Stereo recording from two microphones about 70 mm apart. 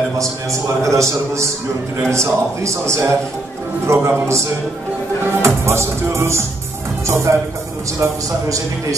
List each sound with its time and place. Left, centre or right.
0.2 s a man's voice: right
3.8 s music: right
7.3 s a man's voice: right